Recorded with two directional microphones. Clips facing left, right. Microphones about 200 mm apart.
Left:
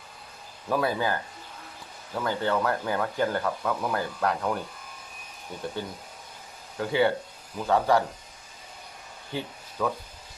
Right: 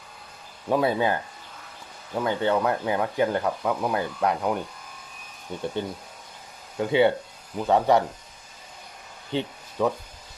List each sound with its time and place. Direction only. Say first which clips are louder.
0.7 s speech: right 4 dB; 25° right (ahead or behind)
2.1 s speech: right 3 dB; 20° right (ahead or behind)
5.8 s speech: right 4 dB; 25° right (ahead or behind)
9.3 s a sound: right 6 dB; 25° right (ahead or behind)